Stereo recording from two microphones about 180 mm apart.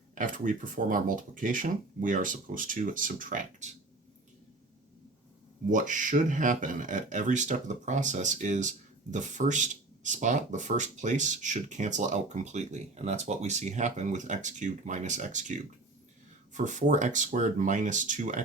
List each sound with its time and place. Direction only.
0.1 s speech: 45° right (ahead or behind)
5.6 s speech: 45° right (ahead or behind)
16.6 s speech: 45° right (ahead or behind)